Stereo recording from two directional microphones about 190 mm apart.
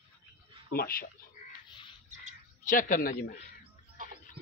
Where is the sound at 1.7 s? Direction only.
25° left (ahead or behind).